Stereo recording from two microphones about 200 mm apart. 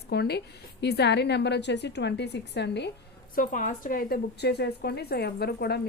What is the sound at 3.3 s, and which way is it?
A woman's voice, 45° left (ahead or behind).